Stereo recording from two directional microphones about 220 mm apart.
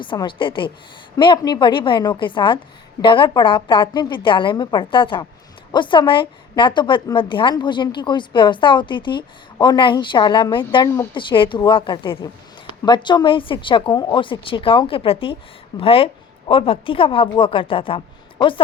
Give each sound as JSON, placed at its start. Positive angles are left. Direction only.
{"t": 0.0, "sound": "a woman's voice", "side_deg": 20}